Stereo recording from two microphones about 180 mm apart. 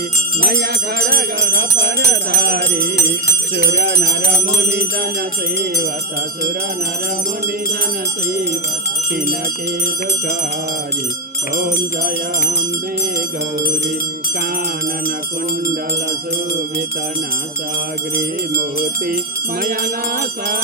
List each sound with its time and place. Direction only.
0.4 s music: 60° right (ahead or behind)
11.5 s music: 55° right (ahead or behind)
19.6 s music: 55° right (ahead or behind)